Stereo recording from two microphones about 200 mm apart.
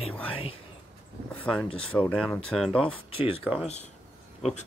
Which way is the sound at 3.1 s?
30° left (ahead or behind).